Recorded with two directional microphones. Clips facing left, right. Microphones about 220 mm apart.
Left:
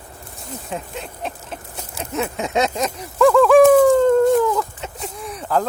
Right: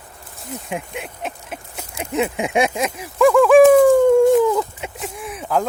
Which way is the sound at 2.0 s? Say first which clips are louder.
Right 3 dB; 15° right (ahead or behind).